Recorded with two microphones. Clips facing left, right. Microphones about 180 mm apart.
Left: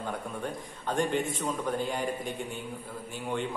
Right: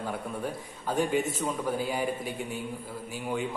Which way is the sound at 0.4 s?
5° right (ahead or behind).